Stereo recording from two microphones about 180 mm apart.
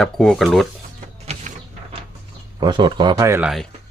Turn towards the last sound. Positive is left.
turn(degrees=-15)  # may be behind; listen again after turning